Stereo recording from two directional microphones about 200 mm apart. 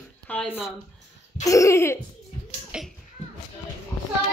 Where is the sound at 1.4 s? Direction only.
15° left (ahead or behind).